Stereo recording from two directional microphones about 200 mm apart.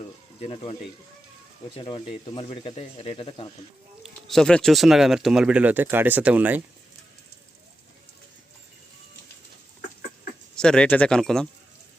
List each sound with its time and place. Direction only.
0.3 s speech: 30° left (ahead or behind)
4.0 s speech: centre (ahead or behind)
10.5 s speech: 5° left (ahead or behind)